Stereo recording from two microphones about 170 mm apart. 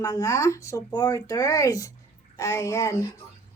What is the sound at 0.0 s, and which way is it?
Speech, 20° left (ahead or behind).